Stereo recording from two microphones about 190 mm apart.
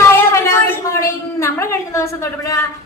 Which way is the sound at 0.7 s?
15° left (ahead or behind).